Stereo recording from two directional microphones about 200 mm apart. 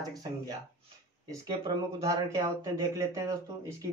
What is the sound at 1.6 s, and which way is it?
Speech, 15° right (ahead or behind).